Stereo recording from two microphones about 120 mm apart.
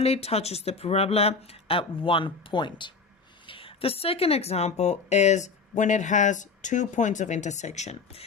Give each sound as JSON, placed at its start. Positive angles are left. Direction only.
{"t": 0.0, "sound": "speech", "side_deg": 60}